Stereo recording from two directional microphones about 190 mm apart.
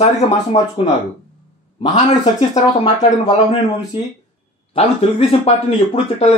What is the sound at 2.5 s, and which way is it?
Speech, 40° left (ahead or behind).